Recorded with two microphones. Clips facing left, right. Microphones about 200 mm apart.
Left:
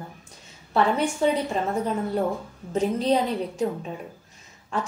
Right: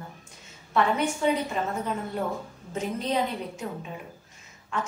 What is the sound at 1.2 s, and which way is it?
Speech, 35° left (ahead or behind).